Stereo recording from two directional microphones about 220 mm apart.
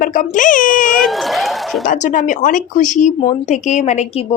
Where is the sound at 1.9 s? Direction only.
35° left (ahead or behind).